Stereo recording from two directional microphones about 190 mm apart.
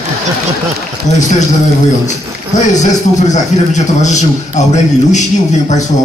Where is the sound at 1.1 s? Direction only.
40° left (ahead or behind).